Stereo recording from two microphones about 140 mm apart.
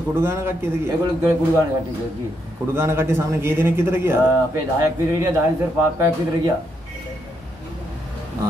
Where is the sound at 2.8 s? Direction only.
15° right (ahead or behind).